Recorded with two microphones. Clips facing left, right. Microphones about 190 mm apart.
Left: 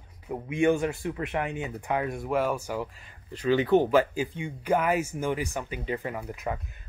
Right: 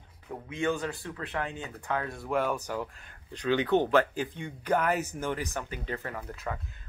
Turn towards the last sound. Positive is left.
turn(degrees=10)  # may be behind; listen again after turning